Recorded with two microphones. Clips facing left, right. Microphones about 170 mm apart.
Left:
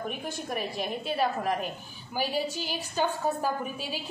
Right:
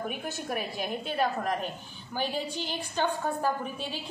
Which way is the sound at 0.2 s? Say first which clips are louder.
Even; centre (ahead or behind).